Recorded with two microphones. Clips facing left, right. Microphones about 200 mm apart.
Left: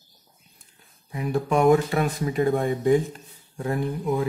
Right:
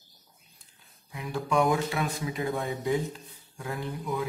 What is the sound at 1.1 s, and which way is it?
Speech, 50° left (ahead or behind).